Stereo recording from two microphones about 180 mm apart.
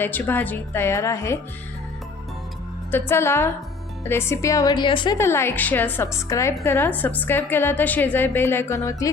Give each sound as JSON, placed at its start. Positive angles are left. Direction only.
{"t": 0.0, "sound": "a woman's voice", "side_deg": 10}
{"t": 3.1, "sound": "a woman's voice", "side_deg": 15}
{"t": 5.1, "sound": "a woman's voice", "side_deg": 15}